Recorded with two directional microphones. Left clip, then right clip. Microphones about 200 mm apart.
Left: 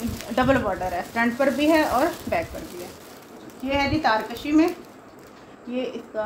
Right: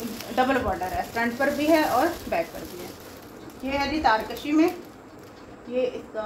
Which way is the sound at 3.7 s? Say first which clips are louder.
Left 1 dB; 45° left (ahead or behind).